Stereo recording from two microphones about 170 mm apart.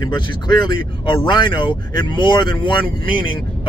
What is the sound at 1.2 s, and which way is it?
Speech, 30° left (ahead or behind).